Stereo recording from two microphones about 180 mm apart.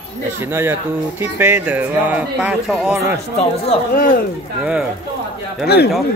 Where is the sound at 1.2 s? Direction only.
10° right (ahead or behind).